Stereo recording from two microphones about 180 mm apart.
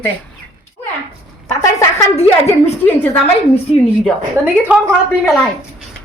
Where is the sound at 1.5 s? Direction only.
15° left (ahead or behind).